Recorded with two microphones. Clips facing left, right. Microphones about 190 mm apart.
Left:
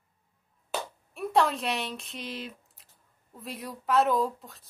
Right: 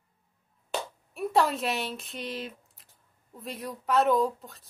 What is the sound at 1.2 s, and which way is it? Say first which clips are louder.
Speech: even; centre (ahead or behind).